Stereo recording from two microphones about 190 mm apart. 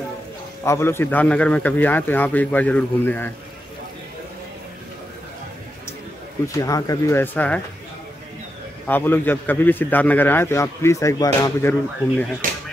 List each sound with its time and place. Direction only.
0.7 s a man's voice: 10° left (ahead or behind)
6.4 s a man's voice: 15° left (ahead or behind)
8.8 s a man's voice: 10° left (ahead or behind)
12.4 s a sound: 45° right (ahead or behind)